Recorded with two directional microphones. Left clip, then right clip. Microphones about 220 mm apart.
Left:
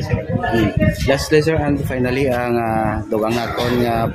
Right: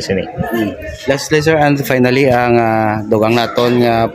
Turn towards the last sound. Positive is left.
turn(degrees=-35)  # may be behind; listen again after turning